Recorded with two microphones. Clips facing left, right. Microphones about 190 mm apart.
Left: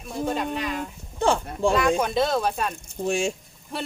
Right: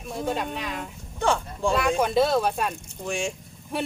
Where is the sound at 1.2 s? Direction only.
30° left (ahead or behind).